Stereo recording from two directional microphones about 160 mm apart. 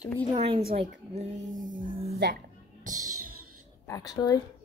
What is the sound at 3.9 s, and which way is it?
Speech, 25° left (ahead or behind).